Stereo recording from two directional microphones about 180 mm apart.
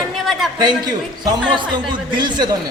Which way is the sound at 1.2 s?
25° right (ahead or behind).